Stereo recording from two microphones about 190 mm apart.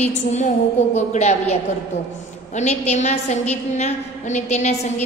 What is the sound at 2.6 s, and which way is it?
A woman's voice, 35° left (ahead or behind).